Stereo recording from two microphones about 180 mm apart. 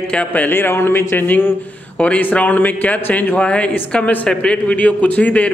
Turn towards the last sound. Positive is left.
turn(degrees=10)  # may be behind; listen again after turning